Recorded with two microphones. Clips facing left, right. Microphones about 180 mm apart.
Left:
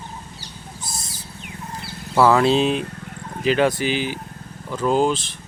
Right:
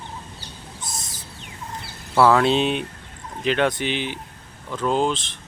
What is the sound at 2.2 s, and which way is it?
Speech, centre (ahead or behind).